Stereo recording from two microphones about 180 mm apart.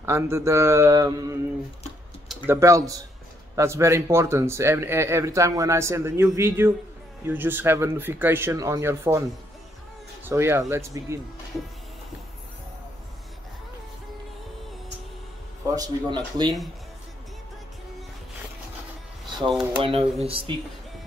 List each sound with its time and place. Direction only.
0.0 s speech: 15° right (ahead or behind)
2.4 s speech: 15° right (ahead or behind)
10.2 s speech: 15° right (ahead or behind)
15.7 s speech: 20° right (ahead or behind)
19.5 s speech: 5° right (ahead or behind)
19.8 s speech: 30° right (ahead or behind)